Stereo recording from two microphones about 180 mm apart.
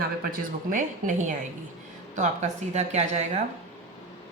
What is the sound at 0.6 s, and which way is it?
Speech, 45° right (ahead or behind).